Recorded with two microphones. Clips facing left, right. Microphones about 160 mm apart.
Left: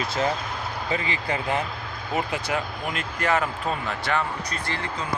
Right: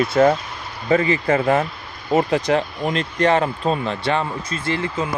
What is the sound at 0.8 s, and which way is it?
Speech, 45° right (ahead or behind).